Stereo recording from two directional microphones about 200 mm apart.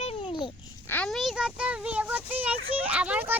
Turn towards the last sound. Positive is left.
turn(degrees=-10)  # may be behind; listen again after turning